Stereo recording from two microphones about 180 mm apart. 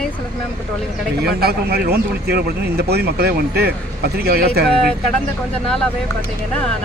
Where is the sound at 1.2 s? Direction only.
60° right (ahead or behind).